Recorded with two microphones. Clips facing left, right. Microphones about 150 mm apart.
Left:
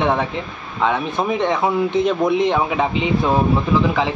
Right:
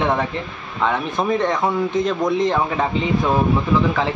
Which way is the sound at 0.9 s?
5° left (ahead or behind).